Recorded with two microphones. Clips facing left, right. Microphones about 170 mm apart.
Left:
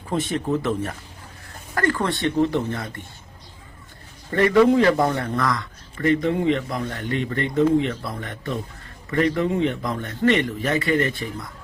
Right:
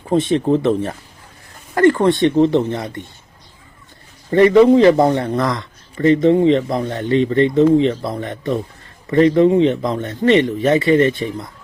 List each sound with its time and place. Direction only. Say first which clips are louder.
0.1 s a man's voice: right 8 dB; 25° right (ahead or behind)
1.7 s a man's voice: right 10 dB; 25° right (ahead or behind)
4.3 s a man's voice: right 6 dB; 20° right (ahead or behind)